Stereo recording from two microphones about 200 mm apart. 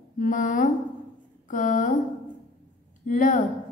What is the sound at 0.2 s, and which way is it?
A woman's voice, 40° left (ahead or behind).